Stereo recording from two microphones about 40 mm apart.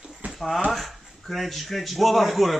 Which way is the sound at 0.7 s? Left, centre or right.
Centre.